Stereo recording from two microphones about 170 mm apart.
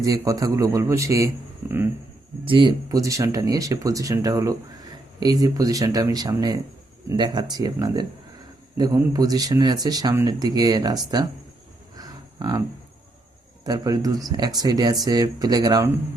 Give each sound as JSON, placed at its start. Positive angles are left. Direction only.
{"t": 0.0, "sound": "speech", "side_deg": -20}
{"t": 2.4, "sound": "speech", "side_deg": -30}
{"t": 11.9, "sound": "a sound", "side_deg": -25}
{"t": 13.7, "sound": "speech", "side_deg": -20}